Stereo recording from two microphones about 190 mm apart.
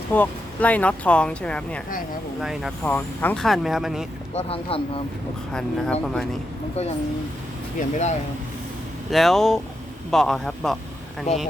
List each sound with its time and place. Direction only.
0.1 s speech: 10° left (ahead or behind)
2.8 s speech: 10° left (ahead or behind)
4.4 s speech: 30° left (ahead or behind)
5.5 s speech: 5° left (ahead or behind)
7.8 s speech: 35° left (ahead or behind)
9.0 s speech: centre (ahead or behind)